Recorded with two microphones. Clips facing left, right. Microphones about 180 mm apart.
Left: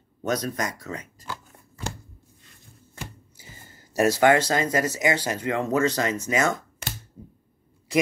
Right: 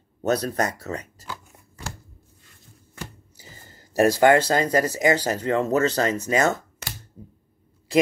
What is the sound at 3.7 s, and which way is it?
Speech, 35° right (ahead or behind).